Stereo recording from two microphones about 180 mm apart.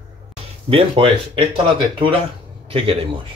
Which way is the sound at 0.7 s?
30° right (ahead or behind).